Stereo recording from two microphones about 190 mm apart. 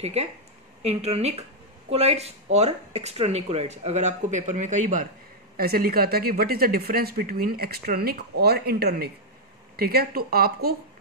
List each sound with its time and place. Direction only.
0.0 s speech: 35° right (ahead or behind)
5.6 s speech: 50° right (ahead or behind)